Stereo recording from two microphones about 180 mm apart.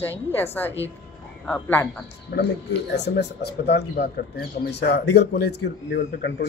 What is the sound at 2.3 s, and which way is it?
Speech, 65° left (ahead or behind).